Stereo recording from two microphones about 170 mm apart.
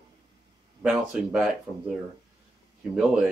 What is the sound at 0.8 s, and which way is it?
Speech, 5° right (ahead or behind).